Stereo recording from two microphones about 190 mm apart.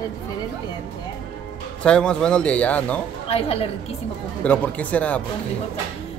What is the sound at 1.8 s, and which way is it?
Speech, 5° left (ahead or behind).